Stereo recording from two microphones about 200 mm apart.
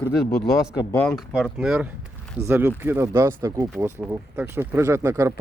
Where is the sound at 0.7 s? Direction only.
15° left (ahead or behind).